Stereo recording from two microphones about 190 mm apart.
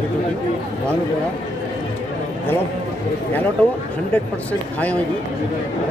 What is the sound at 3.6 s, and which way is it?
Speech, 10° left (ahead or behind).